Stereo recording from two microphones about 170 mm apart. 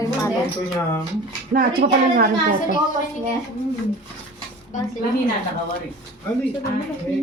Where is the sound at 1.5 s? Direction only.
60° right (ahead or behind).